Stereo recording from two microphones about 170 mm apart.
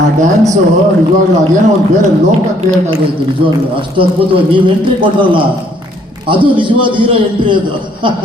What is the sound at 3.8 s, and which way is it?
A man's voice, 30° right (ahead or behind).